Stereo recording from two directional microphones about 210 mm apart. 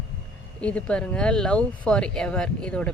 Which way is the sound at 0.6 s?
5° left (ahead or behind).